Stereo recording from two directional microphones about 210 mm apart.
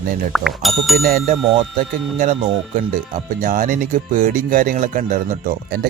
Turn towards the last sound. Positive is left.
turn(degrees=-40)  # may be behind; listen again after turning